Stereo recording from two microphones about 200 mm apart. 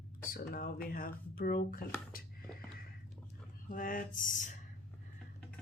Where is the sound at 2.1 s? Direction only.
45° left (ahead or behind).